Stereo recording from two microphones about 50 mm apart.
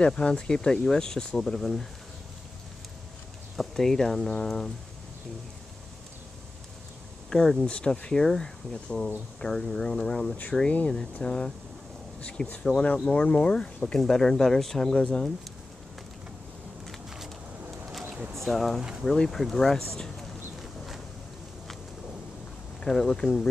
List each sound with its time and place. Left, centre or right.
0.0 s speech: centre
3.5 s speech: centre
7.2 s speech: centre
13.9 s speech: centre
18.4 s speech: centre
18.8 s speech: centre
19.0 s speech: centre
22.8 s speech: centre